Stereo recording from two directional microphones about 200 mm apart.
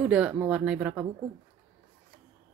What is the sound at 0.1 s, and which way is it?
Speech, 5° right (ahead or behind).